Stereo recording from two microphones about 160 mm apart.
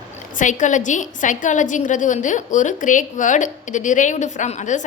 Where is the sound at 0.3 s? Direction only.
50° left (ahead or behind).